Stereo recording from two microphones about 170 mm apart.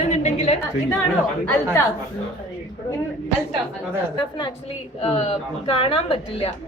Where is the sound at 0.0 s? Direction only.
40° left (ahead or behind).